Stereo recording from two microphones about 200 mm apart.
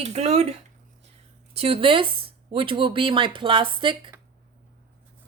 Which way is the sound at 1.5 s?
30° right (ahead or behind).